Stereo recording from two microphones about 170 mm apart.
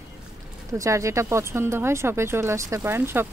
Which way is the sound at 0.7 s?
20° right (ahead or behind).